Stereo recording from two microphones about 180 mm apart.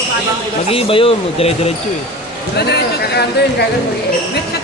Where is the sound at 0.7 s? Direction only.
30° left (ahead or behind).